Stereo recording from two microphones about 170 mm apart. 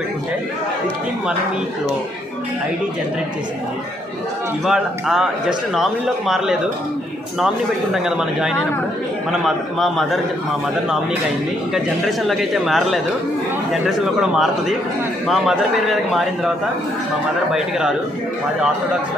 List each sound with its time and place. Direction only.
4.6 s a man's voice: centre (ahead or behind)
11.7 s a man's voice: centre (ahead or behind)